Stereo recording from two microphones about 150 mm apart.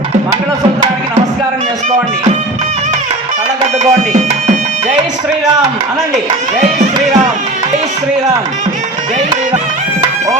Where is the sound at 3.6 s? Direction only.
50° right (ahead or behind).